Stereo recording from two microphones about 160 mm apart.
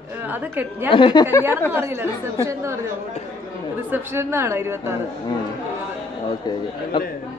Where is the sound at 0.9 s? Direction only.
30° left (ahead or behind).